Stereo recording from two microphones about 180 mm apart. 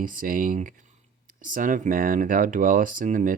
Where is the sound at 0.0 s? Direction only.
50° right (ahead or behind).